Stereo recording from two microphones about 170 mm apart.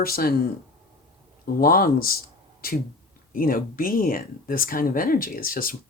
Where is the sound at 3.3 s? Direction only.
55° left (ahead or behind).